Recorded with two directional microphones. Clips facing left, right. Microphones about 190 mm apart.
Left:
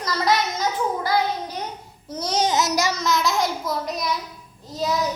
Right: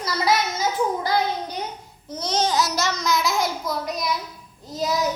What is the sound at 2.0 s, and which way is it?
A child's voice, 10° left (ahead or behind).